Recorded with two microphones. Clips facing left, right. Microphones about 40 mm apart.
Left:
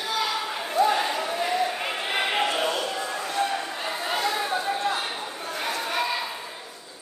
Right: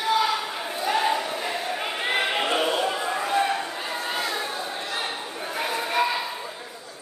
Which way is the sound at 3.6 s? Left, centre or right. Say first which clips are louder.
Even; centre.